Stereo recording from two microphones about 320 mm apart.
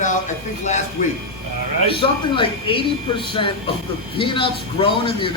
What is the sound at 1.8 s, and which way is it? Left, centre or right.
Speech, centre.